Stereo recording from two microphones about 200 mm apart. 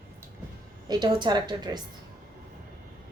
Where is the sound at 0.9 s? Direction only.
20° right (ahead or behind).